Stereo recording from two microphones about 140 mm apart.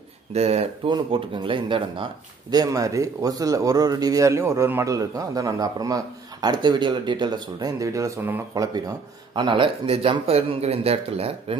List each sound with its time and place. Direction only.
0.3 s speech: 50° right (ahead or behind)
0.9 s speech: 35° right (ahead or behind)
2.5 s a man's voice: 25° right (ahead or behind)
8.7 s speech: 30° right (ahead or behind)